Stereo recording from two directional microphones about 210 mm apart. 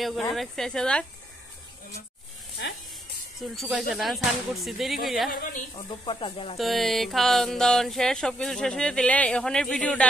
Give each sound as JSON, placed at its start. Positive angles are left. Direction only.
{"t": 0.3, "sound": "music", "side_deg": 0}
{"t": 2.6, "sound": "speech", "side_deg": 55}
{"t": 3.4, "sound": "music", "side_deg": 0}
{"t": 5.3, "sound": "a woman's voice", "side_deg": 40}
{"t": 5.8, "sound": "speech", "side_deg": 25}
{"t": 6.6, "sound": "music", "side_deg": 0}